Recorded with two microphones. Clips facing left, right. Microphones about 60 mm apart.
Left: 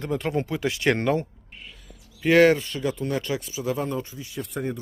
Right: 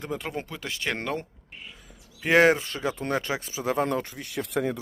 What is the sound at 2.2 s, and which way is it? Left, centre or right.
Speech, centre.